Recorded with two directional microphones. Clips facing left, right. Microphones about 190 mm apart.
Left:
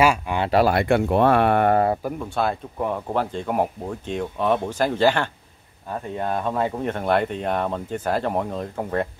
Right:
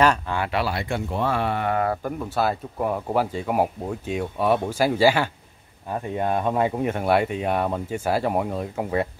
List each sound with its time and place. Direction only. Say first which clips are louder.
0.0 s speech: left 1 dB; 10° left (ahead or behind)
0.5 s speech: left 10 dB; 40° left (ahead or behind)
0.7 s speech: left 8 dB; 60° left (ahead or behind)
2.0 s speech: even; 5° right (ahead or behind)